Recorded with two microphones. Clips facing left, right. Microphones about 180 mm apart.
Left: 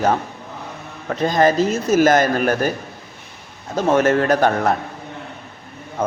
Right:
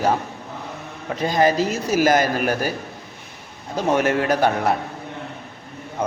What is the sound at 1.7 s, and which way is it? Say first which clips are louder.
Speech: left 4 dB; 50° left (ahead or behind).